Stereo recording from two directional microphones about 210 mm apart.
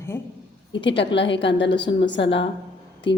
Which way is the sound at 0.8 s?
60° left (ahead or behind).